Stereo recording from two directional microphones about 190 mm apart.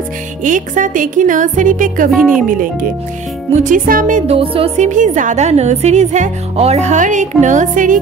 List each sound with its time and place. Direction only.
0.4 s speech: 40° right (ahead or behind)
4.3 s a woman's voice: 30° right (ahead or behind)